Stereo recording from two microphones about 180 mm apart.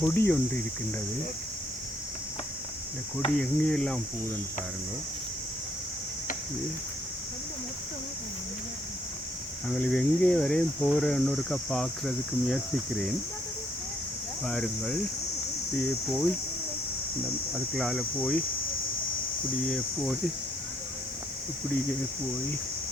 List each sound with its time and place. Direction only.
0.0 s cricket: 10° left (ahead or behind)
3.3 s speech: 5° left (ahead or behind)
9.6 s speech: 5° left (ahead or behind)
14.4 s speech: 5° left (ahead or behind)
17.7 s speech: centre (ahead or behind)
19.6 s speech: centre (ahead or behind)